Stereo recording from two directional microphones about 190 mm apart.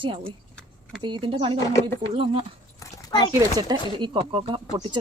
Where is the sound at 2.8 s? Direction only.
20° left (ahead or behind).